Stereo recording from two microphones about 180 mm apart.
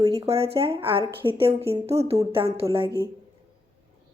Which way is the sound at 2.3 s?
30° right (ahead or behind).